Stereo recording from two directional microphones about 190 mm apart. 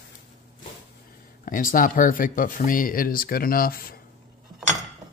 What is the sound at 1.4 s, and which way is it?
Speech, 45° left (ahead or behind).